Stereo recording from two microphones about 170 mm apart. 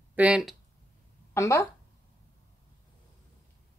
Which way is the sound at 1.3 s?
15° left (ahead or behind).